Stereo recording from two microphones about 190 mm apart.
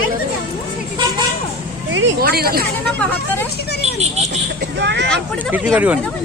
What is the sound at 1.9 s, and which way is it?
Speech, 60° right (ahead or behind).